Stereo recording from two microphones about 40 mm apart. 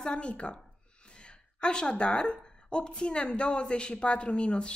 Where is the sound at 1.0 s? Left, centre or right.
Left.